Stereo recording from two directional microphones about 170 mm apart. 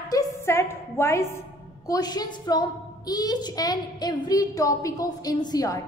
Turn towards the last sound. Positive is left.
turn(degrees=20)  # may be behind; listen again after turning